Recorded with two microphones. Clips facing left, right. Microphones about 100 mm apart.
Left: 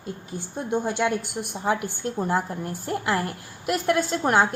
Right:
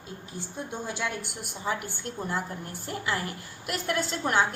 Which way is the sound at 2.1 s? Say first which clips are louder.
Left 7 dB; 45° left (ahead or behind).